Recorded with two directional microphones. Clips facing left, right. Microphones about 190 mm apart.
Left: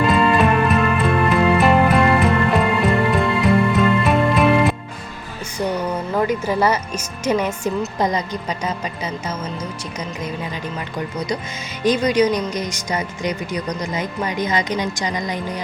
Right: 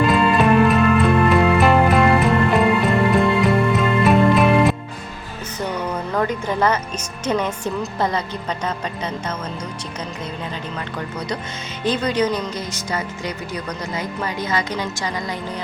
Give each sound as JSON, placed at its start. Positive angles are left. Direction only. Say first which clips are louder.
{"t": 0.0, "sound": "music", "louder": "even", "side_deg": 0}
{"t": 6.1, "sound": "speech", "louder": "left 2 dB", "side_deg": 10}
{"t": 11.8, "sound": "speech", "louder": "left 4 dB", "side_deg": 15}